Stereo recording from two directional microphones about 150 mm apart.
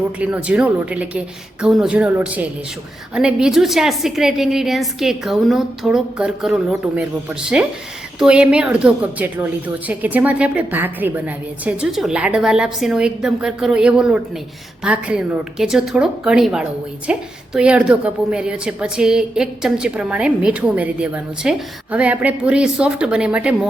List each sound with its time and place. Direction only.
0.2 s a woman's voice: 10° right (ahead or behind)